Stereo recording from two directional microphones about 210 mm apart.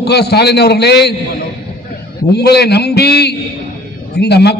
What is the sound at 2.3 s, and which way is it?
A man's voice, 50° left (ahead or behind).